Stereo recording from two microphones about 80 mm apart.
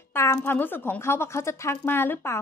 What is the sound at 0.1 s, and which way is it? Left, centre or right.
A woman's voice, left.